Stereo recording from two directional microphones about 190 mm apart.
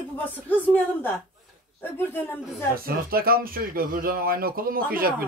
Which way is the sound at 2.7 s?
50° right (ahead or behind).